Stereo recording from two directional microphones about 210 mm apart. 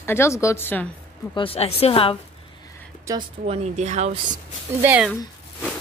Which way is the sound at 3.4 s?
30° right (ahead or behind).